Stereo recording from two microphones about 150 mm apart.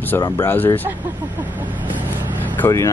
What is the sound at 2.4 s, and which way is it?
Speech, 10° left (ahead or behind).